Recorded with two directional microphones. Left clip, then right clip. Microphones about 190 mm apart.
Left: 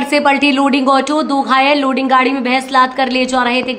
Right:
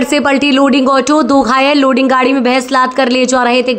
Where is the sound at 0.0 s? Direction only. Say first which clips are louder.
Right 1 dB; 25° right (ahead or behind).